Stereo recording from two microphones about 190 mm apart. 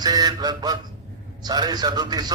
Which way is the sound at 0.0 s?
20° right (ahead or behind).